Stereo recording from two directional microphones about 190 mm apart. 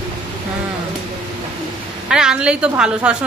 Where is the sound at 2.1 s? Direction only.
5° right (ahead or behind).